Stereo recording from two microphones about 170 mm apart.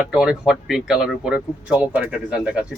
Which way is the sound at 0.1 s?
5° right (ahead or behind).